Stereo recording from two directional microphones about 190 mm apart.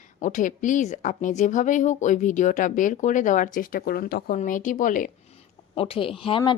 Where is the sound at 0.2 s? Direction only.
45° left (ahead or behind).